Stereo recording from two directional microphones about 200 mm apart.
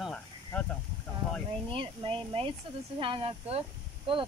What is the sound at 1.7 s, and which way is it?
Speech, 25° right (ahead or behind).